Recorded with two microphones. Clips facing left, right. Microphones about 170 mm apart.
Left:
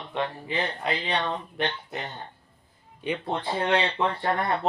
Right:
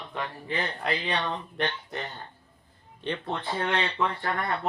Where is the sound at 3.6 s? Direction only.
30° left (ahead or behind).